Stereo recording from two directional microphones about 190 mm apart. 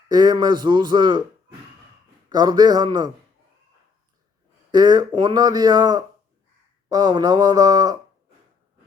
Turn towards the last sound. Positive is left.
turn(degrees=-20)  # may be behind; listen again after turning